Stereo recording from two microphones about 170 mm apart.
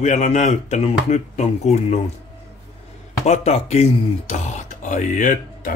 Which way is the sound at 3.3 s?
40° left (ahead or behind).